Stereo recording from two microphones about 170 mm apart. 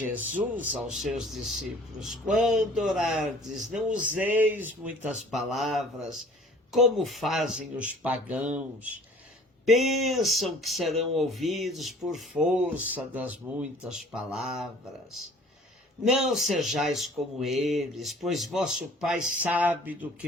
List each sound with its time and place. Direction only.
0.0 s speech: 10° right (ahead or behind)
16.0 s speech: centre (ahead or behind)